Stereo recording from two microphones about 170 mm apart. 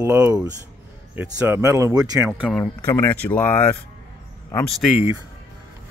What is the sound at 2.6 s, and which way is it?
Speech, 15° left (ahead or behind).